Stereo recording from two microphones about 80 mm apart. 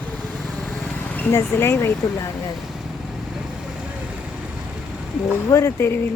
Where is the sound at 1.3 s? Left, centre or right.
Left.